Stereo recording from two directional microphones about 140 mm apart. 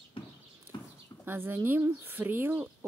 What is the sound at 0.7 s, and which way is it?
Clip-clop, 30° left (ahead or behind).